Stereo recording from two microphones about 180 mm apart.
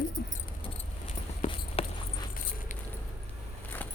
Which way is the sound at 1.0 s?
35° left (ahead or behind).